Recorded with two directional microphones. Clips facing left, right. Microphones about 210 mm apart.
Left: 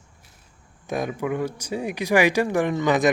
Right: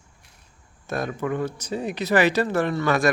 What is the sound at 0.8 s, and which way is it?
Speech, 15° left (ahead or behind).